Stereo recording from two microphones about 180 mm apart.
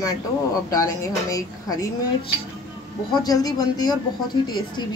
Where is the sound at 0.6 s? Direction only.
20° left (ahead or behind).